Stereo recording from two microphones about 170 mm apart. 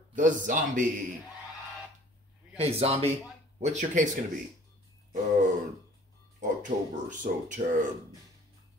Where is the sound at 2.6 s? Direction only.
35° right (ahead or behind).